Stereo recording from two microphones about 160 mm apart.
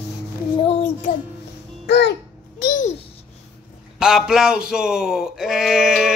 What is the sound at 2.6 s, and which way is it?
Babbling, 55° left (ahead or behind).